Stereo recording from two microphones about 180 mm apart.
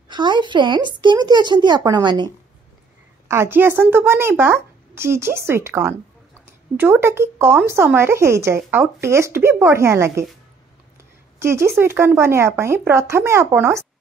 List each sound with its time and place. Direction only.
0.1 s speech: 25° right (ahead or behind)
3.3 s a woman's voice: 15° right (ahead or behind)
11.3 s a woman's voice: 15° right (ahead or behind)